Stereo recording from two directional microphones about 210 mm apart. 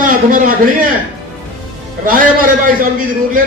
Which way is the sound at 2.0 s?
40° right (ahead or behind).